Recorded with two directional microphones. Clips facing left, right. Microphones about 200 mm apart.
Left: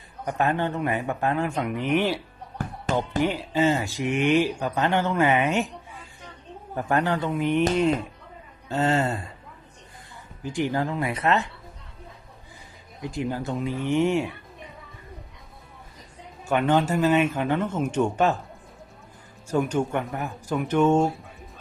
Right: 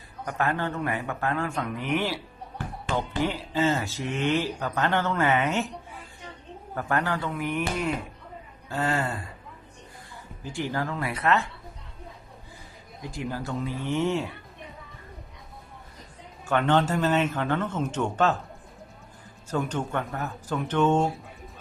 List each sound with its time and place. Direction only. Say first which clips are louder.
0.3 s speech: left 3 dB; 20° left (ahead or behind)
3.2 s speech: left 3 dB; 15° left (ahead or behind)
6.7 s speech: left 3 dB; 20° left (ahead or behind)
10.4 s speech: left 4 dB; 15° left (ahead or behind)
13.0 s speech: left 4 dB; 20° left (ahead or behind)
16.5 s speech: left 1 dB; 10° left (ahead or behind)
19.5 s speech: left 5 dB; 10° left (ahead or behind)